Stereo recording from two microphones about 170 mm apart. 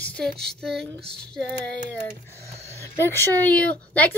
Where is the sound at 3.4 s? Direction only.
10° left (ahead or behind).